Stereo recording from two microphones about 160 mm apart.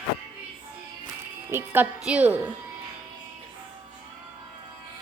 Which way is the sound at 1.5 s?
15° right (ahead or behind).